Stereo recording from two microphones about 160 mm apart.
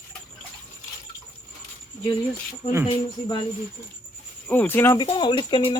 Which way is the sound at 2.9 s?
35° left (ahead or behind).